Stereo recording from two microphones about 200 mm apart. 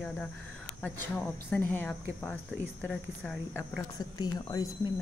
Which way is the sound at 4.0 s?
20° left (ahead or behind).